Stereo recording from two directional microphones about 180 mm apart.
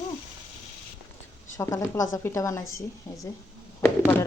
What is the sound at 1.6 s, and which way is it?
Speech, 15° left (ahead or behind).